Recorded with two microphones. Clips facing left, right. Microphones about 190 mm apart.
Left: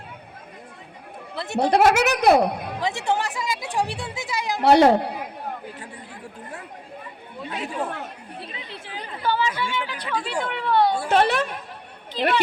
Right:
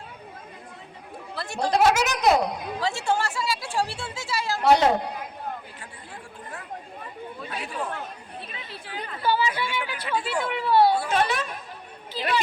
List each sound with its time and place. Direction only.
1.4 s speech: 20° left (ahead or behind)
1.7 s a woman's voice: 60° left (ahead or behind)
2.8 s speech: 20° left (ahead or behind)
4.6 s a woman's voice: 60° left (ahead or behind)
8.4 s chatter: 30° left (ahead or behind)
9.2 s a woman's voice: 10° right (ahead or behind)
11.0 s a woman's voice: 60° left (ahead or behind)
12.1 s a woman's voice: 5° right (ahead or behind)